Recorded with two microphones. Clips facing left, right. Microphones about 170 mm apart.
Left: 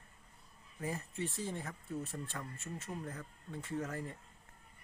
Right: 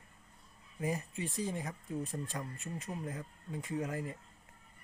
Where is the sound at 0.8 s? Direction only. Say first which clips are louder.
Right 3 dB; 15° right (ahead or behind).